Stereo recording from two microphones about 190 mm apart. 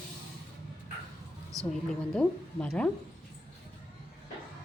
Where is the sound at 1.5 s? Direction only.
15° right (ahead or behind).